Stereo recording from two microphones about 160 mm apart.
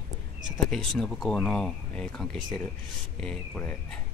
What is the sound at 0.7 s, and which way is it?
Speech, 5° left (ahead or behind).